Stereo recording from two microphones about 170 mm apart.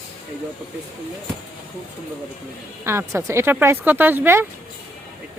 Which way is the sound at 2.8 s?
15° right (ahead or behind).